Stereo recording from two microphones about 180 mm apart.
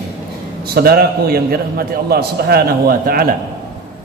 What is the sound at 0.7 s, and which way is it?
A man's voice, 55° right (ahead or behind).